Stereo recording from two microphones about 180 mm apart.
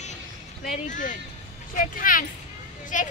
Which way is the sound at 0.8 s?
45° left (ahead or behind).